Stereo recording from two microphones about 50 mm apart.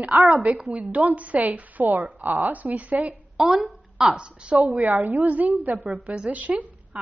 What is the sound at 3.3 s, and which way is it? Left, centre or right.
Speech, centre.